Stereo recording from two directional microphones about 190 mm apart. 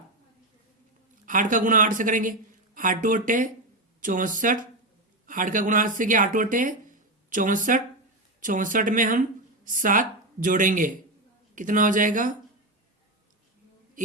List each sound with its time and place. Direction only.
1.2 s speech: 45° right (ahead or behind)